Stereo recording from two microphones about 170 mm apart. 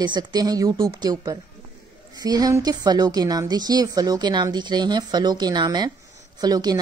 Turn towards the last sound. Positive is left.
turn(degrees=-25)  # may be behind; listen again after turning